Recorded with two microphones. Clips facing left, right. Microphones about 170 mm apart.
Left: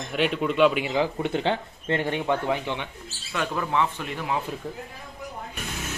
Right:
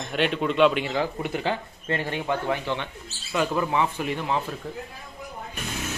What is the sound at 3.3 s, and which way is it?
Speech, 5° right (ahead or behind).